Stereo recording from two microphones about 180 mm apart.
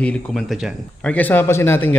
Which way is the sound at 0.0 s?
Centre (ahead or behind).